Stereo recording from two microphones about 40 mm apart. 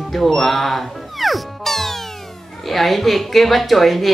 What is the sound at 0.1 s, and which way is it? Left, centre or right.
Speech, centre.